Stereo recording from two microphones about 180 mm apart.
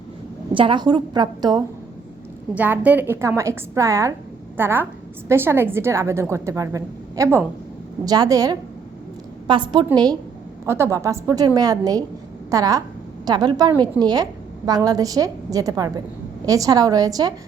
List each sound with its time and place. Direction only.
0.5 s a woman's voice: 25° right (ahead or behind)
2.6 s a woman's voice: 10° right (ahead or behind)